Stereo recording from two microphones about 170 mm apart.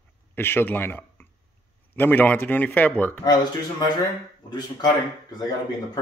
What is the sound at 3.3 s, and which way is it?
Speech, 25° left (ahead or behind).